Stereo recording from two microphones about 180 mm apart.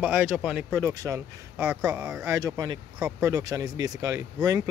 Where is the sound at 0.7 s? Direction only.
15° right (ahead or behind).